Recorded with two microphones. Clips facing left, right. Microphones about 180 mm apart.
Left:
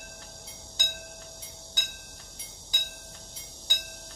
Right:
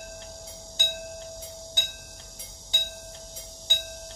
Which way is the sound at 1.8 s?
25° right (ahead or behind).